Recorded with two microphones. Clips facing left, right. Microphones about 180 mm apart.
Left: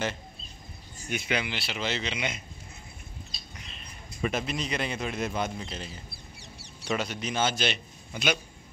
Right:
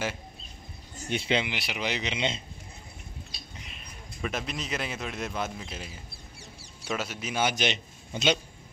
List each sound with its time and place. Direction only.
1.0 s speech: 30° right (ahead or behind)
3.7 s a man's voice: centre (ahead or behind); by 8.4 s 25° right (ahead or behind)